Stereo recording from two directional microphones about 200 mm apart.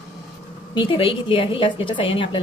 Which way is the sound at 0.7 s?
25° left (ahead or behind).